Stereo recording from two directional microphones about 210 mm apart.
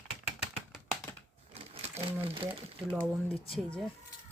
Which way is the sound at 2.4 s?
25° right (ahead or behind).